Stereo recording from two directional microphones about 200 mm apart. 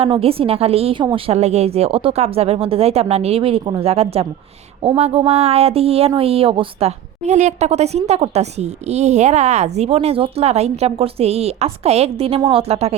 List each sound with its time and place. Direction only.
0.0 s a woman's voice: 30° right (ahead or behind)